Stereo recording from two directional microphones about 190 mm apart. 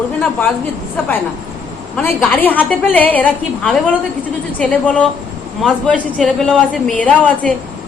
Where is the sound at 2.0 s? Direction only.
10° left (ahead or behind).